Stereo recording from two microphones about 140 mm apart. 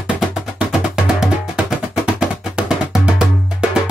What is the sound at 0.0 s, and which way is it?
Music, 5° right (ahead or behind).